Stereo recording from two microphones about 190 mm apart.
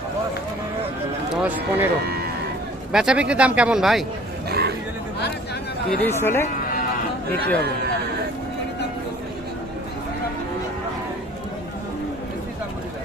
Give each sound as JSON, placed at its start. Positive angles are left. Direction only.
{"t": 1.4, "sound": "speech", "side_deg": -10}
{"t": 2.9, "sound": "speech", "side_deg": -5}
{"t": 4.4, "sound": "a sound", "side_deg": -55}
{"t": 6.0, "sound": "speech", "side_deg": 10}